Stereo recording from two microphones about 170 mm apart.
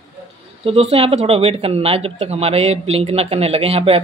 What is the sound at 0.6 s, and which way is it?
Speech, 35° right (ahead or behind).